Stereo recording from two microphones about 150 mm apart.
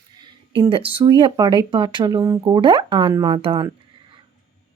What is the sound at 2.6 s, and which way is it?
Speech, 35° right (ahead or behind).